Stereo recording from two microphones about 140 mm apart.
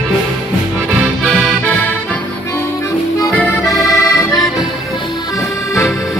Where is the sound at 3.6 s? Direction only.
25° left (ahead or behind).